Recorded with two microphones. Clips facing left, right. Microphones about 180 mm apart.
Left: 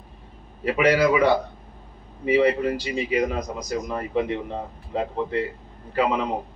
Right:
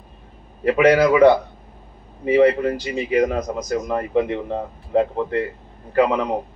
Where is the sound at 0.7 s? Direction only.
55° right (ahead or behind).